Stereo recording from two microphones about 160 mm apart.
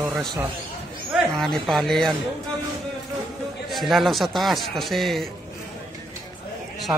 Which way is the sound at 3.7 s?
Centre (ahead or behind).